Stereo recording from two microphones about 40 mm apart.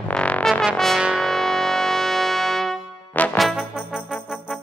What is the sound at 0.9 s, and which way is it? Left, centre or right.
Brass instrument, right.